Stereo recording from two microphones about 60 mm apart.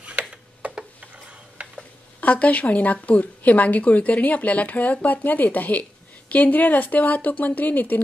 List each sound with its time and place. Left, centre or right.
0.0 s tick-tock: centre
1.6 s a sound: right
2.1 s a woman's voice: left